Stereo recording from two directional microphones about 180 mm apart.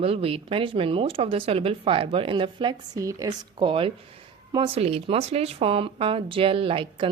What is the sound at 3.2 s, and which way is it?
A woman's voice, 30° right (ahead or behind).